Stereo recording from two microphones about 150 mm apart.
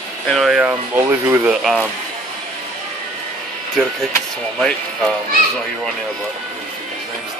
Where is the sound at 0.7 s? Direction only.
15° right (ahead or behind).